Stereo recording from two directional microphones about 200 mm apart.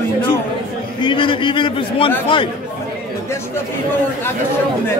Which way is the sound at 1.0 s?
25° left (ahead or behind).